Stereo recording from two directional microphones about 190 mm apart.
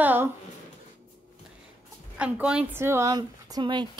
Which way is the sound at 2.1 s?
5° right (ahead or behind).